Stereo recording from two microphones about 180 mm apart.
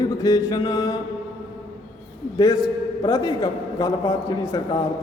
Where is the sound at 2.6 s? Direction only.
20° left (ahead or behind).